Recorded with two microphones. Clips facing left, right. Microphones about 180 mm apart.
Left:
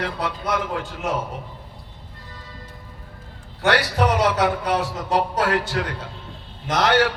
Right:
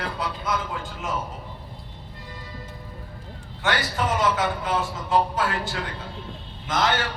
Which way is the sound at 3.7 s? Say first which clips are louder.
Left 6 dB; 70° left (ahead or behind).